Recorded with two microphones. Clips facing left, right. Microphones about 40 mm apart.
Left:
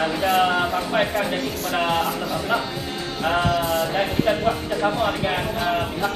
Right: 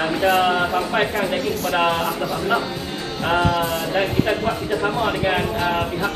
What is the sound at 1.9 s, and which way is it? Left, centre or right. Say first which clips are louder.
A woman's voice: right 1 dB; centre.